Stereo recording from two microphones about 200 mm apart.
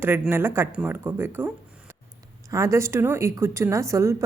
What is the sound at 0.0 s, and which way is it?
Speech, 10° right (ahead or behind).